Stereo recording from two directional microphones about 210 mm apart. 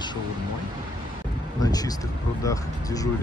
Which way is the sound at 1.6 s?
20° left (ahead or behind).